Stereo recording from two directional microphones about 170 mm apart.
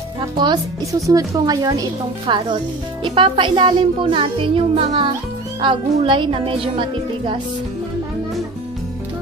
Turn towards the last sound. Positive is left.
turn(degrees=-30)  # may be behind; listen again after turning